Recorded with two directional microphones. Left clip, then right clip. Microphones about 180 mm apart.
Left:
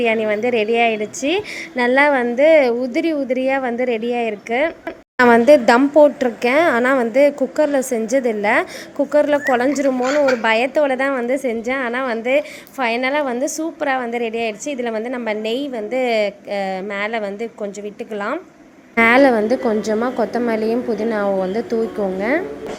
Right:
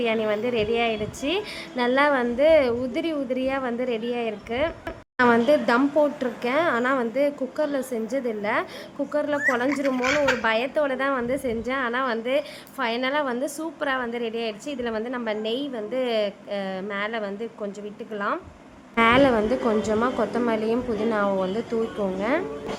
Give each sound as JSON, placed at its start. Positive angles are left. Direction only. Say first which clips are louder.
{"t": 0.0, "sound": "a woman's voice", "louder": "left 6 dB", "side_deg": 20}